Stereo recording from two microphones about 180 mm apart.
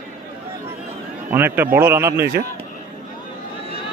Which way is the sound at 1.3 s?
10° right (ahead or behind).